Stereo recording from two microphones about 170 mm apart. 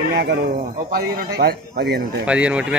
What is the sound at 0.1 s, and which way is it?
Speech, 75° right (ahead or behind).